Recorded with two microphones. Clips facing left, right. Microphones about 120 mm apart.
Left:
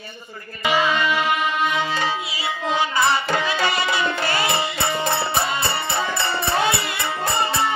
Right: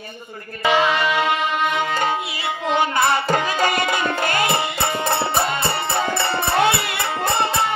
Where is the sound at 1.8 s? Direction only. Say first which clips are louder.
Right 2 dB; 50° right (ahead or behind); by 7.4 s 65° right (ahead or behind).